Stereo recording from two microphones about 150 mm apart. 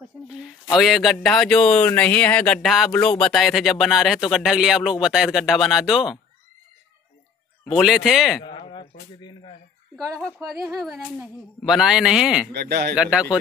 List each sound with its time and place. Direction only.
0.7 s speech: centre (ahead or behind)
7.7 s speech: centre (ahead or behind)
8.5 s a sound: 30° left (ahead or behind)
9.9 s speech: 5° left (ahead or behind)
12.5 s speech: 90° right
12.9 s speech: 5° right (ahead or behind)